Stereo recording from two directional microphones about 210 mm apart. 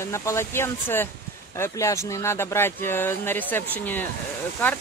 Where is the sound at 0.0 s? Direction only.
15° left (ahead or behind).